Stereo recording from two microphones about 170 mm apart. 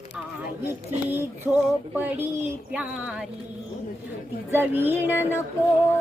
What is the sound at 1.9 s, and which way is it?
Speech, 10° right (ahead or behind).